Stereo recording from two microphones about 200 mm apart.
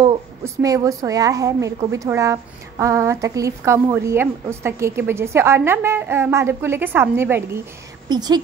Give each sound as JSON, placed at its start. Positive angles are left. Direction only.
{"t": 0.0, "sound": "a woman's voice", "side_deg": -15}